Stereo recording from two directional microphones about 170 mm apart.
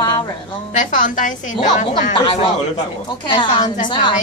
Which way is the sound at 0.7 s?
50° left (ahead or behind).